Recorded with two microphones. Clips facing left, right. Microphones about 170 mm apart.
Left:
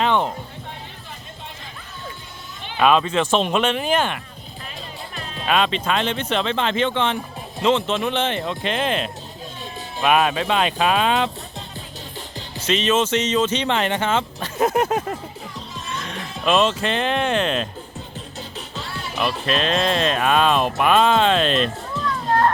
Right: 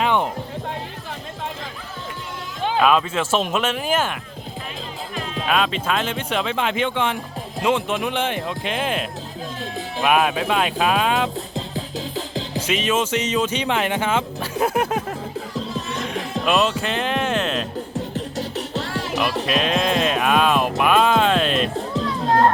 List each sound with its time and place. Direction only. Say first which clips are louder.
0.0 s music: even; 10° right (ahead or behind)
2.8 s speech: left 3 dB; centre (ahead or behind)
5.5 s speech: left 2 dB; centre (ahead or behind)
12.6 s speech: left 3 dB; 10° right (ahead or behind)
16.5 s speech: left 2 dB; 5° right (ahead or behind)
18.1 s music: right 8 dB; 85° right
19.5 s speech: left 1 dB; 10° right (ahead or behind)